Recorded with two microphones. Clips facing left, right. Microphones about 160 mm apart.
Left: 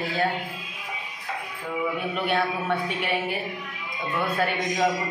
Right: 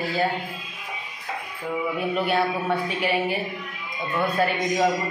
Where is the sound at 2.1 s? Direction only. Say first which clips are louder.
Right 4 dB; 5° right (ahead or behind).